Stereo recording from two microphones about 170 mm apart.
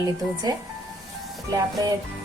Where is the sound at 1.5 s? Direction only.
20° right (ahead or behind).